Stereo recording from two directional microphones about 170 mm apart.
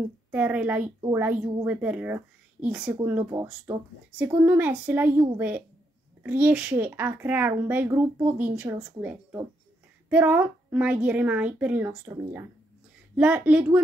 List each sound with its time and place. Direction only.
0.3 s speech: 10° right (ahead or behind)
6.2 s a woman's voice: 10° right (ahead or behind)